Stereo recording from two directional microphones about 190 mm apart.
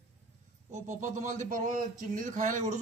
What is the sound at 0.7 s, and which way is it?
Speech, 40° right (ahead or behind).